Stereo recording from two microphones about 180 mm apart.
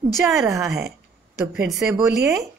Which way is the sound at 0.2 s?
Centre (ahead or behind).